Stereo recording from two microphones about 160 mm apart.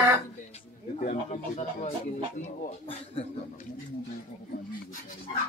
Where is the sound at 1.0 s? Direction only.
45° left (ahead or behind).